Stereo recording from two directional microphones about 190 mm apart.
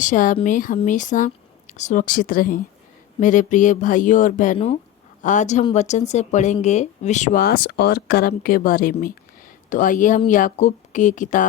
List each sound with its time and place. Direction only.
0.0 s speech: 45° left (ahead or behind)